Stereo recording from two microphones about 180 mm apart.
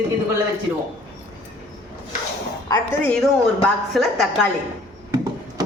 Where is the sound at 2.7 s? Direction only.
10° left (ahead or behind).